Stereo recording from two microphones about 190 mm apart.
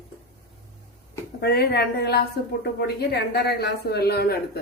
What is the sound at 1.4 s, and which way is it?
A woman's voice, 55° left (ahead or behind).